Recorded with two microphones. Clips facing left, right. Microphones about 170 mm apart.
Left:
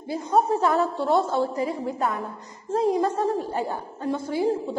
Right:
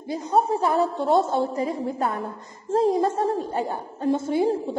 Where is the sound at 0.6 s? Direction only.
15° right (ahead or behind).